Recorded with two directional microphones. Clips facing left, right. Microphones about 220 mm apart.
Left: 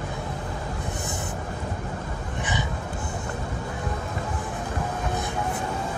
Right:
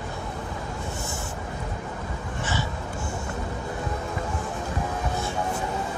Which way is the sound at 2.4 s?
20° left (ahead or behind).